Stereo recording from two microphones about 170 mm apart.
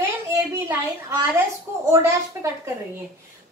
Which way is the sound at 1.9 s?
15° right (ahead or behind).